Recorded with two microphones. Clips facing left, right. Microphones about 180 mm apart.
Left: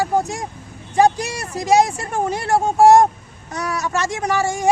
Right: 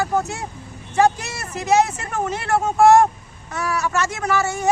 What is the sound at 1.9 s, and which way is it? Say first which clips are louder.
Speech: left 3 dB; 35° left (ahead or behind).